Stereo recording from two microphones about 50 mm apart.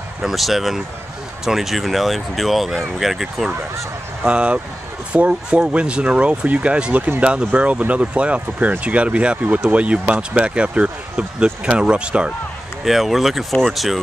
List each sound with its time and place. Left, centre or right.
0.2 s speech: centre
4.2 s speech: right
12.8 s speech: centre